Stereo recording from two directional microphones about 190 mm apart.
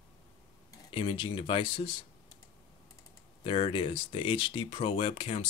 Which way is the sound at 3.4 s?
30° left (ahead or behind).